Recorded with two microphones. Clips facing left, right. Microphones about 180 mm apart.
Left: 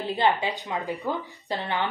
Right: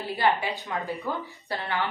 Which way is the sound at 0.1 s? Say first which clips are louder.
Left 1 dB; 20° left (ahead or behind).